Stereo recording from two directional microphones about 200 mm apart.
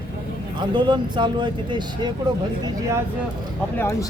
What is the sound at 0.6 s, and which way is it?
Speech, 25° right (ahead or behind).